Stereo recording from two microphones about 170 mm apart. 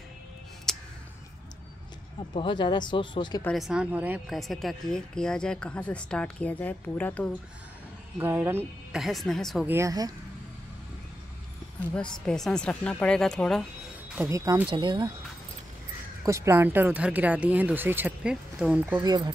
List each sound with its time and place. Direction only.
0.7 s music: centre (ahead or behind)
2.3 s speech: 30° left (ahead or behind)
3.5 s speech: 5° right (ahead or behind)
8.2 s speech: 10° right (ahead or behind)
9.0 s speech: centre (ahead or behind)
9.7 s speech: 15° right (ahead or behind)
11.9 s speech: 5° left (ahead or behind)
14.1 s speech: 15° right (ahead or behind)
16.3 s speech: 15° right (ahead or behind)
19.0 s speech: 25° right (ahead or behind)